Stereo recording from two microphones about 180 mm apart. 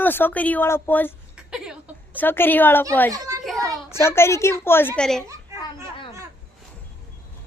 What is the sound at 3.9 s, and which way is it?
A child's voice, 15° left (ahead or behind).